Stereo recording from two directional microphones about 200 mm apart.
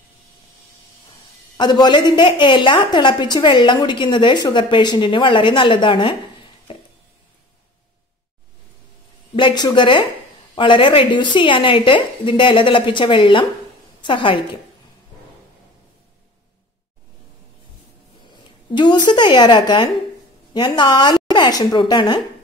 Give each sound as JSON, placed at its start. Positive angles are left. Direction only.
{"t": 1.6, "sound": "a woman's voice", "side_deg": 20}
{"t": 9.3, "sound": "a woman's voice", "side_deg": 25}
{"t": 18.7, "sound": "a woman's voice", "side_deg": 20}